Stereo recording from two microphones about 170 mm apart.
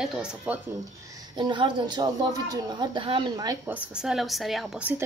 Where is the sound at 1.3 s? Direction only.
25° right (ahead or behind).